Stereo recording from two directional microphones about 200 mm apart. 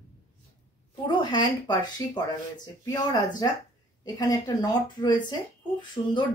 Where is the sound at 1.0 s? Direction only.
20° left (ahead or behind).